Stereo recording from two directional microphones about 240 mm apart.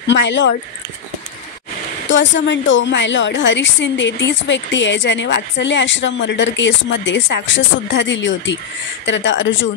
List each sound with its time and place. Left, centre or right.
0.0 s a woman's voice: left
2.0 s a woman's voice: left